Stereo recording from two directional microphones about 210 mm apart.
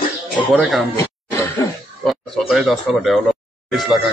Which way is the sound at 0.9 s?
15° left (ahead or behind).